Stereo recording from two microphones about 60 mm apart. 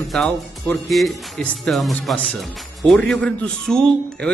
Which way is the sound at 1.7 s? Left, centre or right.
Centre.